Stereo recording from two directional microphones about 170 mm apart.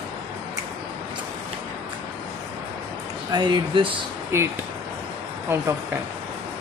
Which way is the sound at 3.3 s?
25° right (ahead or behind).